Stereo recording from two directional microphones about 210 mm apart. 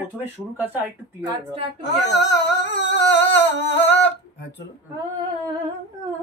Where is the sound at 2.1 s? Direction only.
55° left (ahead or behind).